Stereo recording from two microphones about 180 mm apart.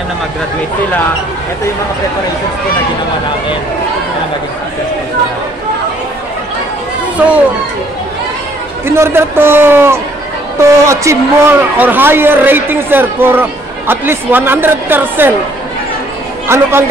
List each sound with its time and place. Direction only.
7.2 s speech: 10° right (ahead or behind)
8.8 s speech: 15° right (ahead or behind)
16.4 s speech: 15° right (ahead or behind)